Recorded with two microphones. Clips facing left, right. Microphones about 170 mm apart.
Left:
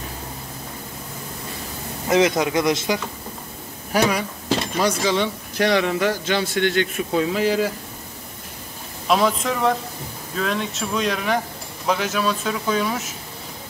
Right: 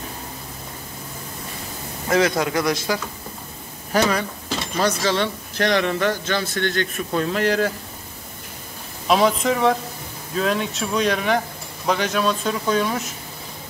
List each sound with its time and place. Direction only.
2.0 s speech: 20° left (ahead or behind)
3.9 s speech: 10° left (ahead or behind)
9.0 s speech: centre (ahead or behind)